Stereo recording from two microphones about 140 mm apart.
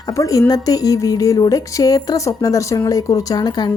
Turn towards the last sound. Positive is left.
turn(degrees=30)  # may be behind; listen again after turning